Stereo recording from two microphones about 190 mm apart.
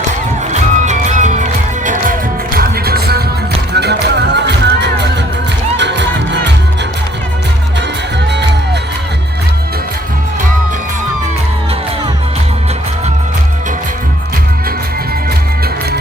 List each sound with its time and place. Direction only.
0.5 s music: 40° right (ahead or behind)
2.6 s music: 55° right (ahead or behind)